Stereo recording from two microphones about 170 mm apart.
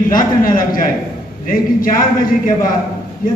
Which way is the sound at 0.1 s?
55° left (ahead or behind).